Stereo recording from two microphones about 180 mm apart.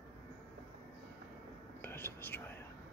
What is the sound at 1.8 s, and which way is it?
Whispering, 10° left (ahead or behind).